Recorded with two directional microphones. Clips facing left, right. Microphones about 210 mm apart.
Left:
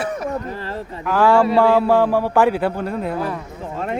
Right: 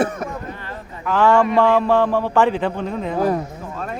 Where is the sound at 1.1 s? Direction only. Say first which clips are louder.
Left 1 dB; 10° left (ahead or behind).